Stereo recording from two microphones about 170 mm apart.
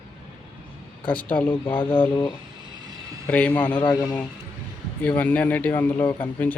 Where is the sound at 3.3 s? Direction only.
10° left (ahead or behind).